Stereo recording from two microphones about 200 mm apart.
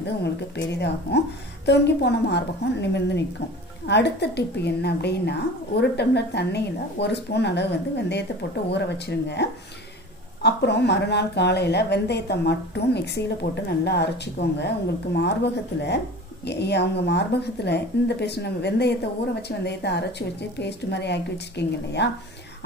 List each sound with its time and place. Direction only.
0.0 s a woman's voice: 60° left (ahead or behind)